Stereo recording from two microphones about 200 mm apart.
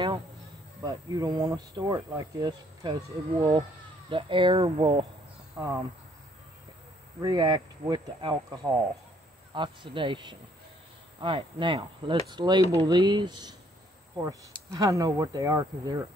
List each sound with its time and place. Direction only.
0.8 s speech: 20° right (ahead or behind)
5.6 s speech: 15° right (ahead or behind)
7.2 s speech: 20° right (ahead or behind)
14.8 s speech: 15° right (ahead or behind)